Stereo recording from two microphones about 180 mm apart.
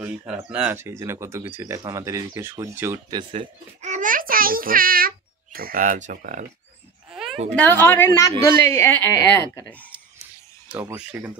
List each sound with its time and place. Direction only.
0.0 s speech: 15° right (ahead or behind)
3.2 s a child's voice: 30° right (ahead or behind)
7.1 s a sound: centre (ahead or behind)
7.7 s a woman's voice: 10° left (ahead or behind)
10.7 s speech: 10° right (ahead or behind)